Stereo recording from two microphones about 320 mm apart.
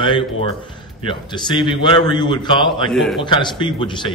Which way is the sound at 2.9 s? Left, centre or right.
Centre.